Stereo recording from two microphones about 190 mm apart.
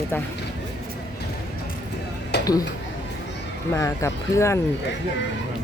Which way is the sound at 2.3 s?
60° left (ahead or behind).